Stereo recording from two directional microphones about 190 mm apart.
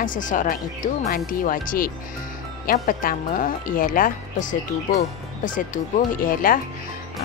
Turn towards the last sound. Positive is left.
turn(degrees=45)  # may be behind; listen again after turning